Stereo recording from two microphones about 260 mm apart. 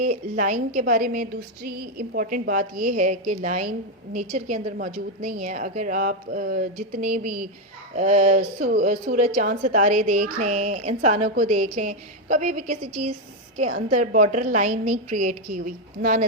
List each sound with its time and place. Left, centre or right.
0.0 s a woman's voice: right
13.7 s a woman's voice: right
14.0 s a woman's voice: right